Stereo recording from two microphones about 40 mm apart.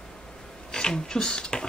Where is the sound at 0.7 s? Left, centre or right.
Left.